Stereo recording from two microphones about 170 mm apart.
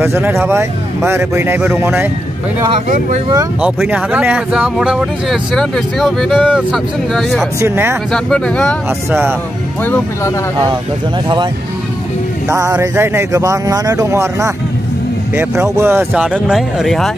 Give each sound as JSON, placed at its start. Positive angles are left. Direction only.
{"t": 0.0, "sound": "a man's voice", "side_deg": -15}
{"t": 3.6, "sound": "speech", "side_deg": -5}
{"t": 7.6, "sound": "a man's voice", "side_deg": -15}
{"t": 8.1, "sound": "speech", "side_deg": 5}
{"t": 9.8, "sound": "speech", "side_deg": 10}
{"t": 12.4, "sound": "music", "side_deg": -20}
{"t": 12.7, "sound": "a man's voice", "side_deg": -15}
{"t": 16.3, "sound": "speech", "side_deg": -5}